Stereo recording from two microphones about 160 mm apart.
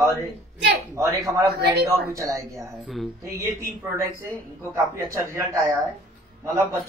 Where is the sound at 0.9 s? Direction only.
20° right (ahead or behind).